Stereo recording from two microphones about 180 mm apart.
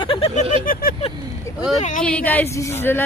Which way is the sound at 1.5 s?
15° left (ahead or behind).